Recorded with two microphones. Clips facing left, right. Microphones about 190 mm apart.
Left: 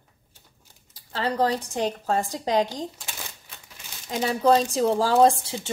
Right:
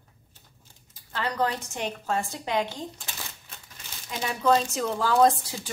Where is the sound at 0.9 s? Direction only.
35° left (ahead or behind).